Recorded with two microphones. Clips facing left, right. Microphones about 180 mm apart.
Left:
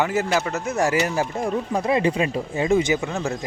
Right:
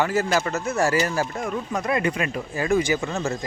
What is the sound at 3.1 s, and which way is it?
Speech, centre (ahead or behind).